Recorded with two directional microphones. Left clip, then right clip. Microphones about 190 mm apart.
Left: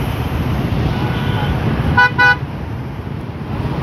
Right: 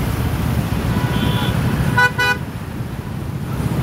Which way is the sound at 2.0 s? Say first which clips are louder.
Left 5 dB; 85° right.